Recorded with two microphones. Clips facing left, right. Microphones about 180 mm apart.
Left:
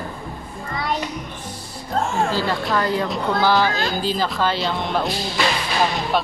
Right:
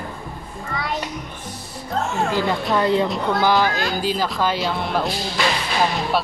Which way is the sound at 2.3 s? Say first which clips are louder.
Right 1 dB; 20° right (ahead or behind).